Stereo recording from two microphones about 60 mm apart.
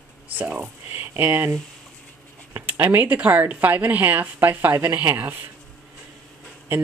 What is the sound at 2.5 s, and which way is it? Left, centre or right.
A woman's voice, right.